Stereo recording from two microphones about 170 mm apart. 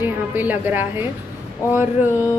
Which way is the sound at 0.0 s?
10° right (ahead or behind).